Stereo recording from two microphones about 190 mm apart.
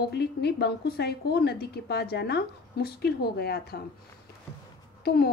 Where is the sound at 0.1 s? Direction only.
60° left (ahead or behind).